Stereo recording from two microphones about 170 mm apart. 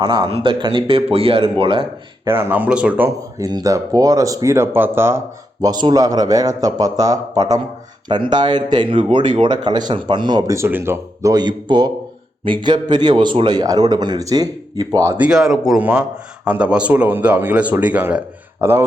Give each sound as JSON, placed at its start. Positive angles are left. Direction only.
{"t": 0.0, "sound": "speech", "side_deg": -30}
{"t": 2.3, "sound": "speech", "side_deg": -10}
{"t": 3.4, "sound": "speech", "side_deg": -20}